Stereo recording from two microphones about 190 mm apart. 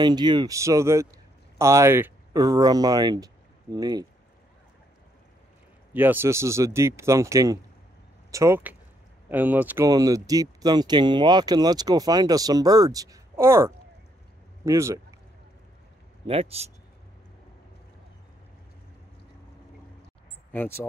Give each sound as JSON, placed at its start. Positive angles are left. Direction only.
{"t": 0.0, "sound": "speech", "side_deg": -20}
{"t": 5.9, "sound": "speech", "side_deg": -10}
{"t": 16.3, "sound": "a man's voice", "side_deg": -30}
{"t": 20.5, "sound": "speech", "side_deg": 10}